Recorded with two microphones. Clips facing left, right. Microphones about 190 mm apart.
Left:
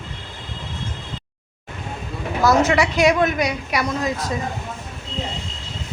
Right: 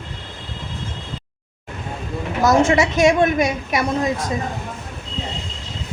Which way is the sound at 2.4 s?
20° right (ahead or behind).